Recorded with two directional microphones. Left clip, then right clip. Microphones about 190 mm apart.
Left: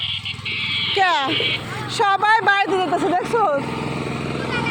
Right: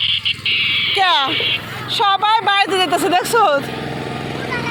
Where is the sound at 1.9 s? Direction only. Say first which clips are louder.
Right 2 dB; 35° left (ahead or behind).